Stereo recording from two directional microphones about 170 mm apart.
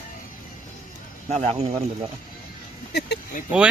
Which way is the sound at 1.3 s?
40° right (ahead or behind).